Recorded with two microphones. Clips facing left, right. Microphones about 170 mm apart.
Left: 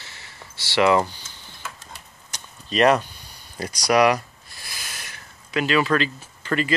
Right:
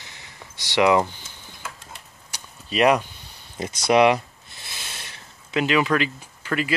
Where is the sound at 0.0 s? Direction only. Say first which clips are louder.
Even; 15° right (ahead or behind).